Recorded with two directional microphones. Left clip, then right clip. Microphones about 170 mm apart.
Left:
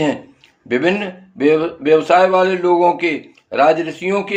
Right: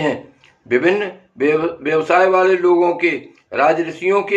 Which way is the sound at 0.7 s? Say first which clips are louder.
Right 1 dB; 35° left (ahead or behind).